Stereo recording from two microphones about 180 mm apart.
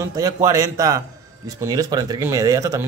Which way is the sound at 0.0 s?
20° right (ahead or behind).